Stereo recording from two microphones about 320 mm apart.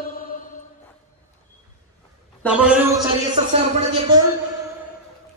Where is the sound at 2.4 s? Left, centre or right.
Centre.